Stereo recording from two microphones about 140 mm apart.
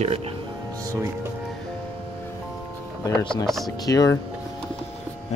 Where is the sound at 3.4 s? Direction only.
Centre (ahead or behind).